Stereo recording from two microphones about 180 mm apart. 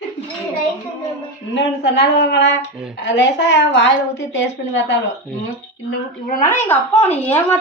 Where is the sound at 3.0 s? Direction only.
80° left.